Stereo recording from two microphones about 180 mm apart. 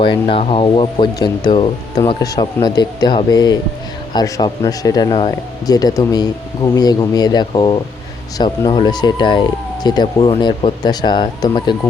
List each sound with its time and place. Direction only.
0.0 s speech: 30° left (ahead or behind)